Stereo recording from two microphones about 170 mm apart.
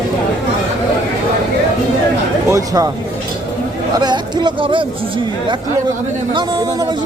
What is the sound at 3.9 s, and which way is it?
Speech, 25° right (ahead or behind).